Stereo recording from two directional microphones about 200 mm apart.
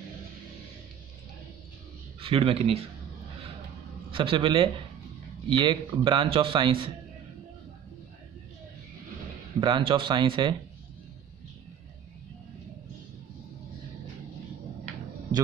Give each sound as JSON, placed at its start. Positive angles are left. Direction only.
{"t": 2.1, "sound": "a man's voice", "side_deg": -30}
{"t": 4.1, "sound": "speech", "side_deg": -25}
{"t": 9.6, "sound": "speech", "side_deg": -25}